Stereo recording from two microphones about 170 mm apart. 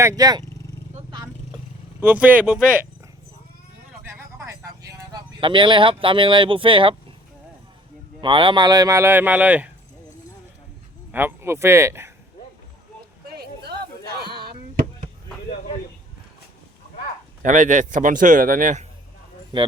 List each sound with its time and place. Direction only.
0.0 s speech: 20° right (ahead or behind)
2.0 s speech: 10° right (ahead or behind)
4.0 s a sound: 15° right (ahead or behind)
8.2 s speech: 30° right (ahead or behind); by 9.6 s 10° right (ahead or behind)
11.1 s speech: 10° right (ahead or behind)
13.3 s a sound: 70° right (ahead or behind)
17.4 s a man's voice: 45° right (ahead or behind)